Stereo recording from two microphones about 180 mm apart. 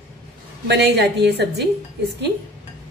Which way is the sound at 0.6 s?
70° right (ahead or behind).